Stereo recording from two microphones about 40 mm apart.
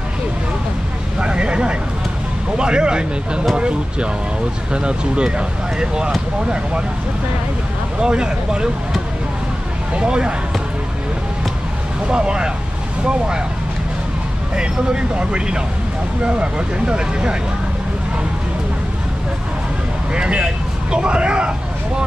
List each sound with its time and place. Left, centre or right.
1.2 s vehicle: right
2.5 s speech: right
8.0 s speech: right
9.9 s speech: right
12.1 s speech: right
14.5 s speech: right
20.2 s speech: right